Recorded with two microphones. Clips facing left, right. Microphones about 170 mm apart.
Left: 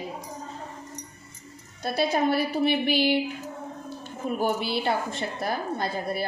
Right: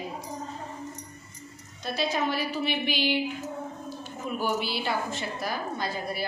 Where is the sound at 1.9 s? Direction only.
55° left (ahead or behind).